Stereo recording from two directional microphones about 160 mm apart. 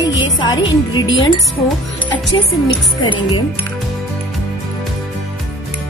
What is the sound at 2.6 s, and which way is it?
Speech, 30° left (ahead or behind).